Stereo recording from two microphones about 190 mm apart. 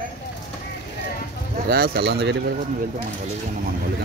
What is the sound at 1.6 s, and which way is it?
Speech, 55° right (ahead or behind).